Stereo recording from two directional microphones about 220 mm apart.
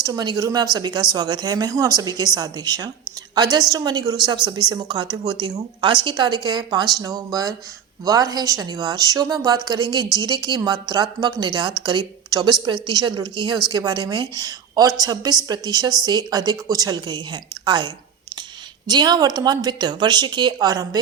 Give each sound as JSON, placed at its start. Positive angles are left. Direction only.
{"t": 0.0, "sound": "a woman's voice", "side_deg": -15}